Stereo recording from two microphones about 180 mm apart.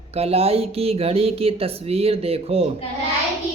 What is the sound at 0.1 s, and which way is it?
Speech, 35° right (ahead or behind).